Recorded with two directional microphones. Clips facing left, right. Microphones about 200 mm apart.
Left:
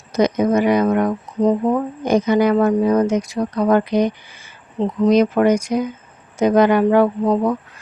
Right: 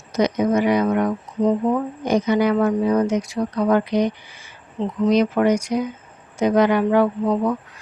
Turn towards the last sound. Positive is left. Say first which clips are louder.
# left 3 dB
turn(degrees=40)  # may be behind; listen again after turning